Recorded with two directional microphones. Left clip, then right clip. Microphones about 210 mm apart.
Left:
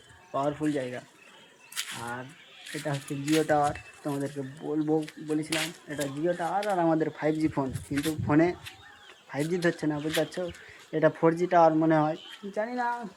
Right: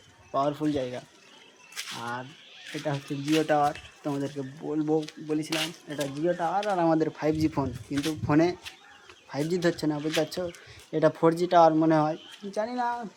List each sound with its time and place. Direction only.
0.3 s speech: 15° right (ahead or behind)